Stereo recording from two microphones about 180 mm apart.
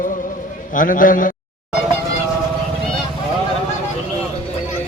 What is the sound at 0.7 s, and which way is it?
Speech, 50° left (ahead or behind).